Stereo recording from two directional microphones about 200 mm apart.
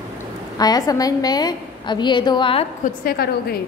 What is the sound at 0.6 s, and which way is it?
A woman's voice, 20° left (ahead or behind).